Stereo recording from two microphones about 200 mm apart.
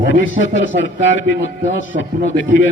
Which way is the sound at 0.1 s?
70° left (ahead or behind).